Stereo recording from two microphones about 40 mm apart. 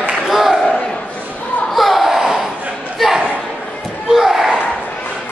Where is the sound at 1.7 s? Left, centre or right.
Centre.